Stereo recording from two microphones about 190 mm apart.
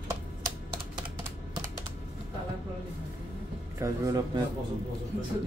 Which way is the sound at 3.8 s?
15° right (ahead or behind).